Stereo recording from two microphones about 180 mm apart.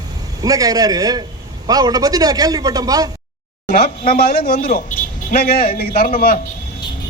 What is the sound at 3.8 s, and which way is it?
A man's voice, 55° left (ahead or behind).